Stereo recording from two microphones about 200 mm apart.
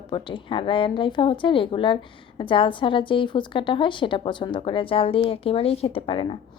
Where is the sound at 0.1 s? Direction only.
25° left (ahead or behind).